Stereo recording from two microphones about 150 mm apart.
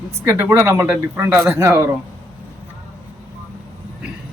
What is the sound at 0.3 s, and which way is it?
Speech, 15° right (ahead or behind).